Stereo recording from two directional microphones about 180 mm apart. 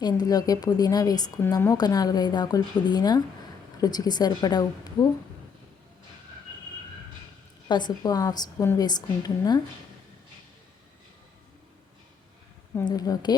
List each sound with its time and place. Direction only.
0.0 s speech: 20° left (ahead or behind)
7.7 s speech: 25° left (ahead or behind)
12.8 s speech: 20° left (ahead or behind)